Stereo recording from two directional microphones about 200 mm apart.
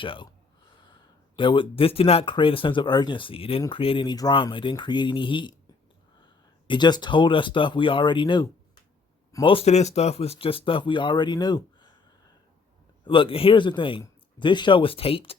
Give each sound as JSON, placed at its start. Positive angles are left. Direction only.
{"t": 0.0, "sound": "speech", "side_deg": 25}
{"t": 1.4, "sound": "speech", "side_deg": 25}
{"t": 13.1, "sound": "speech", "side_deg": 25}